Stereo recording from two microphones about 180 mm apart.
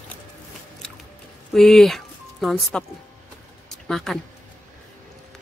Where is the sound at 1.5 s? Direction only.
Centre (ahead or behind).